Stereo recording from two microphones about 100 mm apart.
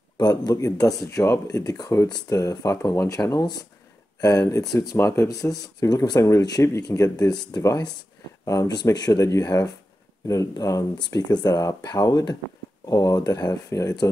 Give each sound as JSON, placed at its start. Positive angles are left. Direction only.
{"t": 0.2, "sound": "speech", "side_deg": 45}